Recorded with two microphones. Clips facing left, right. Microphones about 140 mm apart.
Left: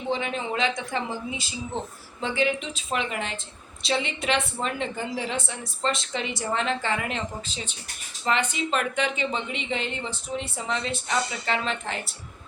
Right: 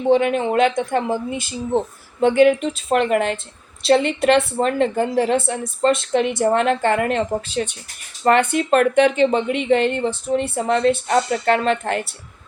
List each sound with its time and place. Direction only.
0.1 s a woman's voice: 55° right (ahead or behind)